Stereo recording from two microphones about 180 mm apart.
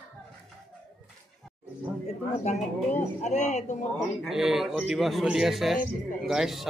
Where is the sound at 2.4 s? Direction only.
40° left (ahead or behind).